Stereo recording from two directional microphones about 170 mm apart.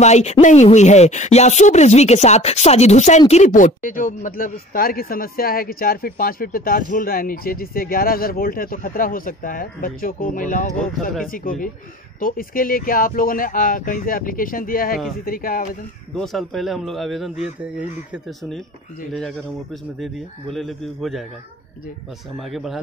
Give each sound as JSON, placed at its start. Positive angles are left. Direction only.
{"t": 0.0, "sound": "speech", "side_deg": 40}
{"t": 16.2, "sound": "speech", "side_deg": 0}
{"t": 22.4, "sound": "speech", "side_deg": 0}